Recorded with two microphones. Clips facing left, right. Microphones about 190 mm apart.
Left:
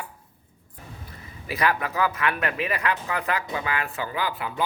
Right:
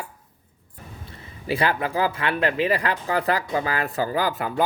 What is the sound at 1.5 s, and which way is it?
Speech, 30° right (ahead or behind).